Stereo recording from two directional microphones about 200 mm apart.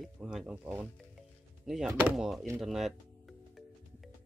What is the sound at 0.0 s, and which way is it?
Speech, centre (ahead or behind).